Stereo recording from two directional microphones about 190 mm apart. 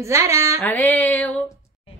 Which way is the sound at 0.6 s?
10° left (ahead or behind).